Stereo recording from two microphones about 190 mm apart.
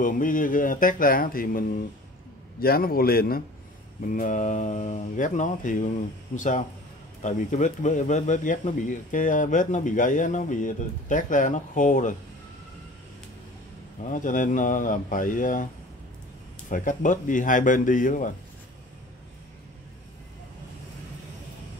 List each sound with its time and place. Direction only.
0.0 s mantra: 45° left (ahead or behind)
4.1 s speech: 40° left (ahead or behind)
14.0 s mantra: 45° left (ahead or behind)